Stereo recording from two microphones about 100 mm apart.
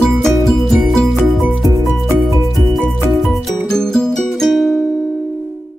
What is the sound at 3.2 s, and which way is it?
Music, centre (ahead or behind).